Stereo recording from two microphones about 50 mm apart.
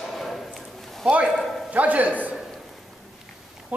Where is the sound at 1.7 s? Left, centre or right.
Right.